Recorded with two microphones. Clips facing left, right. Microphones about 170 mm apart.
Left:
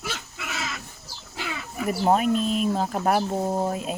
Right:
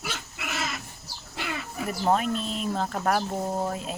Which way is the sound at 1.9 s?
15° left (ahead or behind).